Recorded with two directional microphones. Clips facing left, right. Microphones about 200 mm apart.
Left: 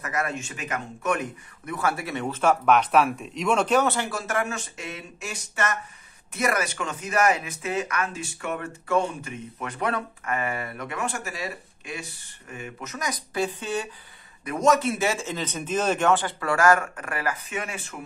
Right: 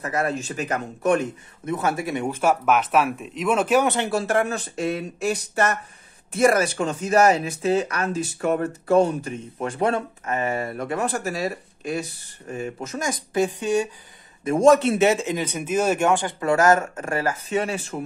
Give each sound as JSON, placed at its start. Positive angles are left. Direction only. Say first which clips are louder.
{"t": 0.0, "sound": "a man's voice", "louder": "right 4 dB", "side_deg": -30}
{"t": 3.9, "sound": "speech", "louder": "right 6 dB", "side_deg": -25}
{"t": 13.3, "sound": "a man's voice", "louder": "right 7 dB", "side_deg": -15}
{"t": 14.4, "sound": "a man's voice", "louder": "right 6 dB", "side_deg": -30}